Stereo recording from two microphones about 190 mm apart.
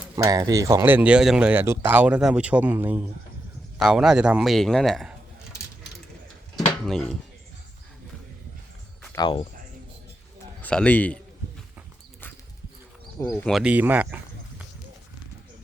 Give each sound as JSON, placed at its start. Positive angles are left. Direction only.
{"t": 0.2, "sound": "a man's voice", "side_deg": -20}
{"t": 6.7, "sound": "speech", "side_deg": 5}
{"t": 9.1, "sound": "speech", "side_deg": 25}
{"t": 10.6, "sound": "a man's voice", "side_deg": 5}
{"t": 13.1, "sound": "speech", "side_deg": 15}
{"t": 13.5, "sound": "speech", "side_deg": -5}